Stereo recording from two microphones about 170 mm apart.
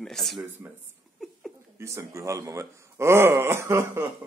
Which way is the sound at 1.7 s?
15° right (ahead or behind).